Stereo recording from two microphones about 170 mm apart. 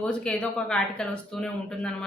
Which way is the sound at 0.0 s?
5° left (ahead or behind).